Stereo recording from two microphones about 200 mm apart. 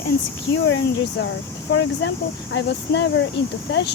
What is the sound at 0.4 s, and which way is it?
Speech, 65° left (ahead or behind).